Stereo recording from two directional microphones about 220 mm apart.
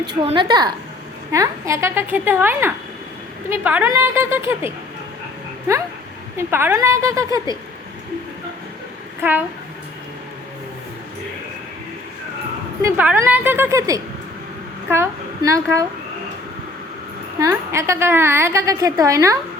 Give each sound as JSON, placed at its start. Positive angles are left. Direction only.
{"t": 0.0, "sound": "a woman's voice", "side_deg": -20}
{"t": 6.3, "sound": "a woman's voice", "side_deg": -10}
{"t": 12.8, "sound": "a woman's voice", "side_deg": -10}
{"t": 17.4, "sound": "a woman's voice", "side_deg": -15}